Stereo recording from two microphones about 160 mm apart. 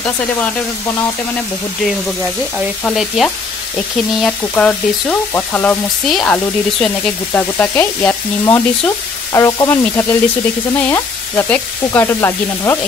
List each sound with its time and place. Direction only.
2.8 s frying: centre (ahead or behind)
4.3 s sizzle: 10° left (ahead or behind)
8.5 s frying: 20° left (ahead or behind)
10.8 s sizzle: 15° left (ahead or behind)